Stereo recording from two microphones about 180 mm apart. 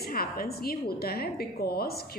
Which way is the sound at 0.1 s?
55° left (ahead or behind).